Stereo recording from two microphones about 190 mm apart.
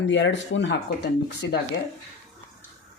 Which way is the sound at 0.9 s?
60° left (ahead or behind).